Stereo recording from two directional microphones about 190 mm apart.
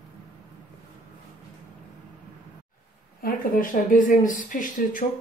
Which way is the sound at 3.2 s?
45° left (ahead or behind).